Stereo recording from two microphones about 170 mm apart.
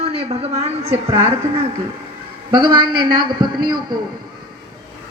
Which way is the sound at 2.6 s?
30° right (ahead or behind).